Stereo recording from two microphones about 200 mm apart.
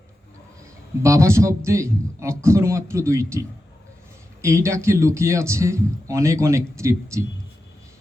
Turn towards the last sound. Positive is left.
turn(degrees=-15)  # may be behind; listen again after turning